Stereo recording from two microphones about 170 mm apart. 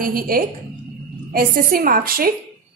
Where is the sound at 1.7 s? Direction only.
60° right (ahead or behind).